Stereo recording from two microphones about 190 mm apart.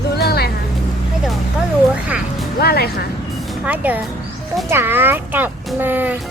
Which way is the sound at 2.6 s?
55° left (ahead or behind).